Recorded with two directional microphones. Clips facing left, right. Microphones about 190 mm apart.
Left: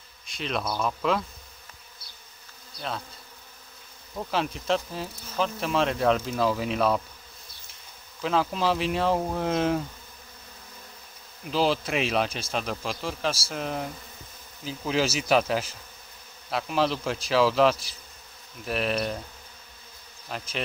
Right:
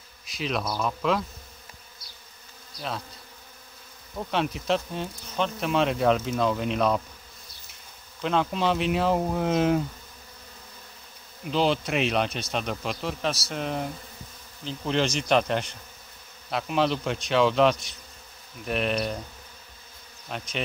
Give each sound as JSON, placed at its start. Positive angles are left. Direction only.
{"t": 0.3, "sound": "speech", "side_deg": 0}
{"t": 4.3, "sound": "speech", "side_deg": 0}
{"t": 8.2, "sound": "speech", "side_deg": 0}
{"t": 11.4, "sound": "speech", "side_deg": 0}
{"t": 20.2, "sound": "speech", "side_deg": 0}